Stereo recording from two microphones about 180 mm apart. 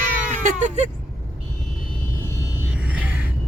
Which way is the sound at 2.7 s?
5° right (ahead or behind).